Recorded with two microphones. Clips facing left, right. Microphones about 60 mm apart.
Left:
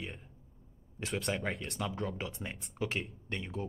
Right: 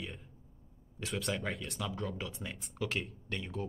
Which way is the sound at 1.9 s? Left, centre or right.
Centre.